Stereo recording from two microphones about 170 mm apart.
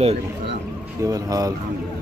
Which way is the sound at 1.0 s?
20° right (ahead or behind).